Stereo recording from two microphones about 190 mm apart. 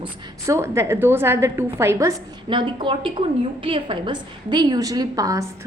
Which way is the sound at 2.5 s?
25° right (ahead or behind).